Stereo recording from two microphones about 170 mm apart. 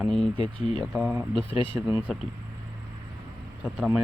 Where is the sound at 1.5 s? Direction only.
30° left (ahead or behind).